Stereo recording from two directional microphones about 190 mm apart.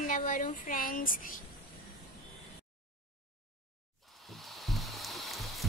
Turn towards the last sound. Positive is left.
turn(degrees=0)  # may be behind; listen again after turning